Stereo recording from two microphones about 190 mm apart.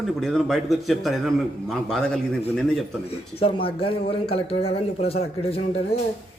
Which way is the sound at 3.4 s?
30° left (ahead or behind).